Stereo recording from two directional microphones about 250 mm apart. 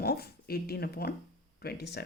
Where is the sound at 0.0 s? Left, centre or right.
Left.